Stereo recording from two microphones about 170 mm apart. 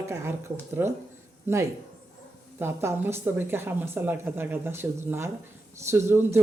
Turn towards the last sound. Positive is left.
turn(degrees=-15)  # may be behind; listen again after turning